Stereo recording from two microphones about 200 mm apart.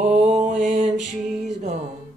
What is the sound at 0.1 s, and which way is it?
Mantra, 35° right (ahead or behind).